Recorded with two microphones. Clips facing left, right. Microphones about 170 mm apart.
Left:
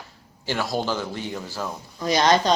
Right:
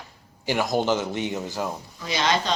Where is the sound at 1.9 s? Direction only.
40° left (ahead or behind).